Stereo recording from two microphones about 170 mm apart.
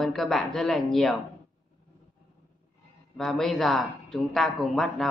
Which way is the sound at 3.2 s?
Centre (ahead or behind).